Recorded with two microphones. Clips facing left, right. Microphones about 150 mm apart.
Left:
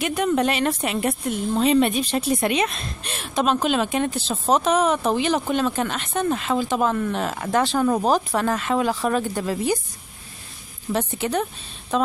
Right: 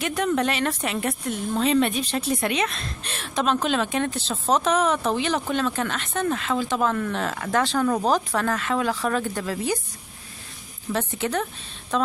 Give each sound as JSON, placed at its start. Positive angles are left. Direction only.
{"t": 0.0, "sound": "a woman's voice", "side_deg": 10}
{"t": 10.9, "sound": "a woman's voice", "side_deg": 15}